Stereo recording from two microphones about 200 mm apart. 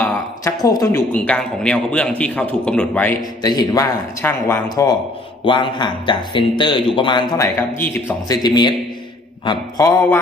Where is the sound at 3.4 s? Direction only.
20° left (ahead or behind).